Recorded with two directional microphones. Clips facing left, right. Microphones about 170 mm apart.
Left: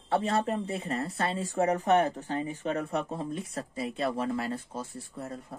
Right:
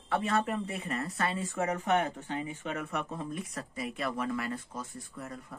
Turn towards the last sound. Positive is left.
turn(degrees=30)  # may be behind; listen again after turning